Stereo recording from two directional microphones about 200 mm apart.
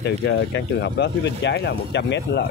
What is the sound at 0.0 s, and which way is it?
Speech, 65° left (ahead or behind).